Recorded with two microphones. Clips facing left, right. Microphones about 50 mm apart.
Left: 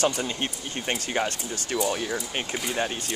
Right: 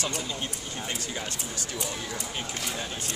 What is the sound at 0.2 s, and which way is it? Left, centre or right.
Speech, left.